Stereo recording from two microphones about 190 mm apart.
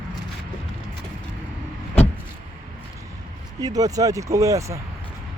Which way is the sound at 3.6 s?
20° right (ahead or behind).